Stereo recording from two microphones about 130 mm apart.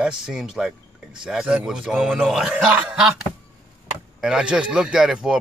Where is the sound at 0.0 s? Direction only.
5° right (ahead or behind).